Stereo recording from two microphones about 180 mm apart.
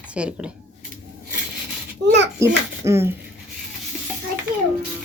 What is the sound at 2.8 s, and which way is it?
Speech, 15° right (ahead or behind).